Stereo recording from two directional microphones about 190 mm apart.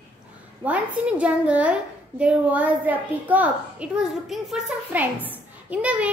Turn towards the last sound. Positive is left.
turn(degrees=-5)  # may be behind; listen again after turning